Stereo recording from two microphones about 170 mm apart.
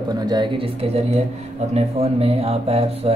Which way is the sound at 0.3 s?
30° right (ahead or behind).